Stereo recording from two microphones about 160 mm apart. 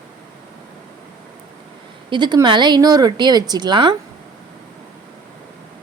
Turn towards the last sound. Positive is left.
turn(degrees=-30)  # may be behind; listen again after turning